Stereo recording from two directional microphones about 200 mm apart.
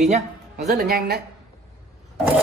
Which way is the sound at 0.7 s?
50° right (ahead or behind).